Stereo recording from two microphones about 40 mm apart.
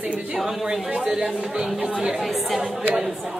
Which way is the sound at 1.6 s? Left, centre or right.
Centre.